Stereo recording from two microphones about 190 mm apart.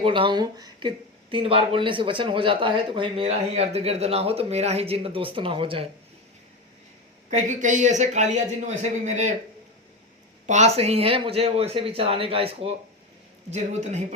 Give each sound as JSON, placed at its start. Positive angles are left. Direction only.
{"t": 0.0, "sound": "speech", "side_deg": -25}
{"t": 7.3, "sound": "speech", "side_deg": -40}
{"t": 10.4, "sound": "speech", "side_deg": -35}